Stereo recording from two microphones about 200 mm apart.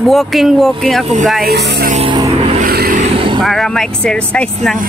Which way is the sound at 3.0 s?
25° right (ahead or behind).